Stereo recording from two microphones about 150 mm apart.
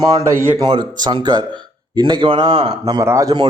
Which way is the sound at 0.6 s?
30° right (ahead or behind).